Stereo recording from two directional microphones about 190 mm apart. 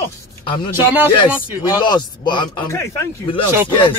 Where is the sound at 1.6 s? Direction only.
25° left (ahead or behind).